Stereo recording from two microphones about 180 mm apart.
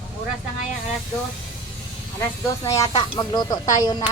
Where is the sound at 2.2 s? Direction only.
15° left (ahead or behind).